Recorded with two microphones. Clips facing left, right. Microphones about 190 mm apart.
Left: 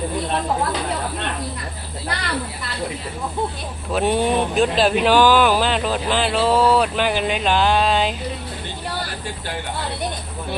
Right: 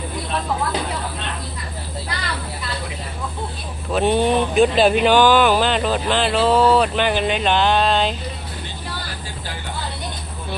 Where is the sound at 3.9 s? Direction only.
5° left (ahead or behind).